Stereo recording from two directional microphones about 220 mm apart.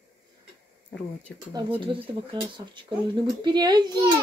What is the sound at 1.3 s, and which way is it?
Speech, 15° right (ahead or behind).